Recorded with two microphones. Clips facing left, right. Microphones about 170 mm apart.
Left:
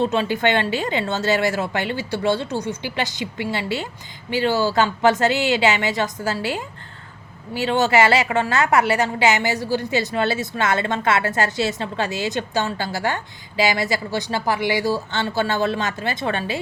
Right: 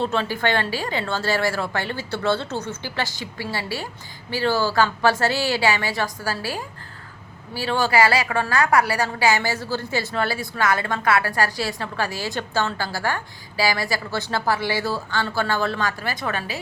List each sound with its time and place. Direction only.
0.0 s a woman's voice: 15° left (ahead or behind)